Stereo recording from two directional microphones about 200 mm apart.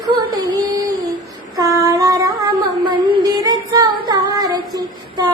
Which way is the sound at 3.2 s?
20° right (ahead or behind).